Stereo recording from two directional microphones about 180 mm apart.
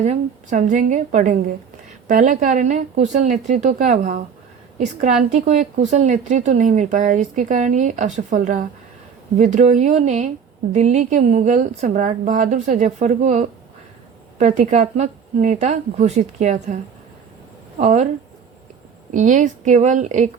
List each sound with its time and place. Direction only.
0.0 s a woman's voice: 40° right (ahead or behind)
17.7 s a woman's voice: 40° right (ahead or behind)
19.1 s a woman's voice: 45° right (ahead or behind)